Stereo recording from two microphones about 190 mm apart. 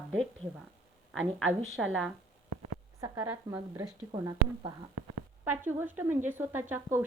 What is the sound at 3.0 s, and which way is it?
Speech, 15° right (ahead or behind).